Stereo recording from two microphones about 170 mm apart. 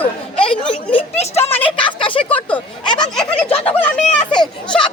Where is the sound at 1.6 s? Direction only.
30° left (ahead or behind).